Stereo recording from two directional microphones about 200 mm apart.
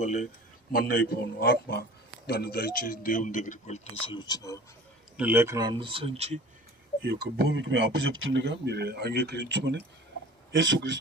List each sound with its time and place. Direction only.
0.0 s a man's voice: 35° left (ahead or behind)
0.7 s a man's voice: 50° left (ahead or behind); by 4.5 s 20° left (ahead or behind)
5.1 s speech: 10° right (ahead or behind); by 6.4 s 30° right (ahead or behind)
7.0 s speech: 55° right (ahead or behind)